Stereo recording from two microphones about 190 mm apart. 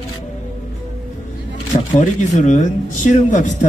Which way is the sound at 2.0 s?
40° left (ahead or behind).